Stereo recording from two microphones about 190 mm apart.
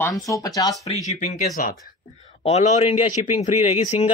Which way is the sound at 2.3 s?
35° left (ahead or behind).